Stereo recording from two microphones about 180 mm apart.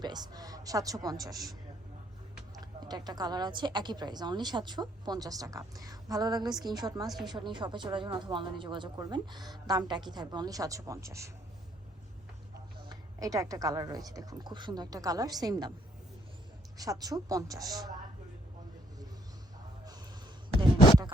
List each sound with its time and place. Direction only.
0.0 s a woman's voice: 25° right (ahead or behind)
2.6 s a woman's voice: 20° right (ahead or behind)
12.8 s a woman's voice: 20° right (ahead or behind)
16.7 s a woman's voice: 20° right (ahead or behind)